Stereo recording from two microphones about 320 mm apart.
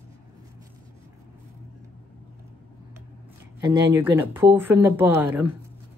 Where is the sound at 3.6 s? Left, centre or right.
Centre.